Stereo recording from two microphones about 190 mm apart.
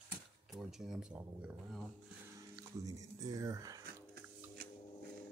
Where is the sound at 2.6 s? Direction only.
15° right (ahead or behind).